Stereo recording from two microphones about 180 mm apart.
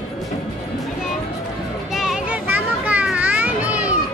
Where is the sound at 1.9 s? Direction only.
5° right (ahead or behind).